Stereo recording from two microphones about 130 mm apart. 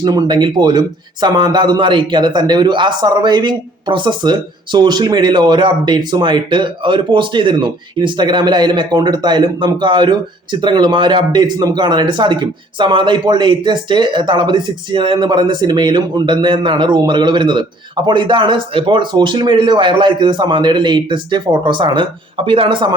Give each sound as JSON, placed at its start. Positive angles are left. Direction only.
{"t": 0.0, "sound": "speech", "side_deg": -35}